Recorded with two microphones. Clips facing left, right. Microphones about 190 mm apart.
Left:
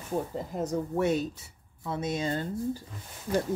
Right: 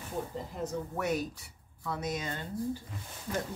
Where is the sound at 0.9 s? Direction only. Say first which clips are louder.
Left 6 dB; 25° left (ahead or behind).